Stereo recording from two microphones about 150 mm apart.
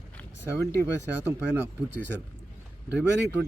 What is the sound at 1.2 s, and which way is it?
Speech, 15° right (ahead or behind).